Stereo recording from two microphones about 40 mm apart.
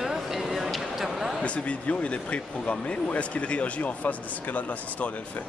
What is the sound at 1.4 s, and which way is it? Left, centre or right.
Speech, left.